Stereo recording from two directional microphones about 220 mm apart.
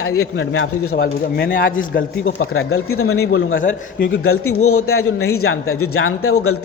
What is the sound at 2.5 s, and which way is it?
Speech, 70° left (ahead or behind).